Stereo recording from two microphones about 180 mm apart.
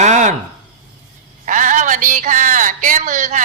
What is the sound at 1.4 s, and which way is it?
A woman's voice, 45° right (ahead or behind).